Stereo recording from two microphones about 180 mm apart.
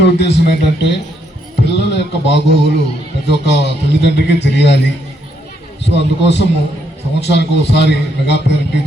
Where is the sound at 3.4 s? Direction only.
75° left (ahead or behind).